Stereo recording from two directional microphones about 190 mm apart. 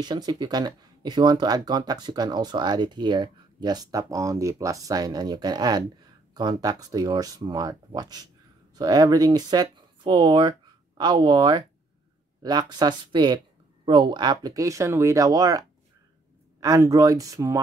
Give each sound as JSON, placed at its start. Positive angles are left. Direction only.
{"t": 0.0, "sound": "speech", "side_deg": -20}